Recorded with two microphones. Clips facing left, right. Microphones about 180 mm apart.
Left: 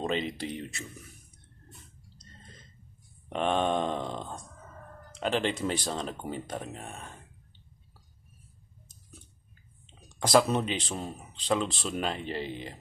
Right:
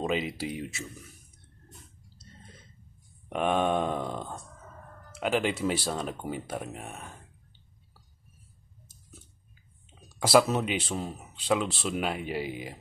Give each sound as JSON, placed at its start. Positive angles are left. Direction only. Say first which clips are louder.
{"t": 0.0, "sound": "speech", "louder": "right 1 dB", "side_deg": -5}
{"t": 2.1, "sound": "a sound", "louder": "right 2 dB", "side_deg": -5}
{"t": 3.3, "sound": "speech", "louder": "right 1 dB", "side_deg": -5}
{"t": 9.8, "sound": "speech", "louder": "right 1 dB", "side_deg": -5}